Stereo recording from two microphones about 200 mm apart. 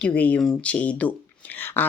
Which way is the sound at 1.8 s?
10° left (ahead or behind).